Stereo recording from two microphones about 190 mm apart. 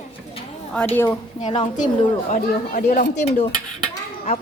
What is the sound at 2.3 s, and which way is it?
Speech, 45° left (ahead or behind).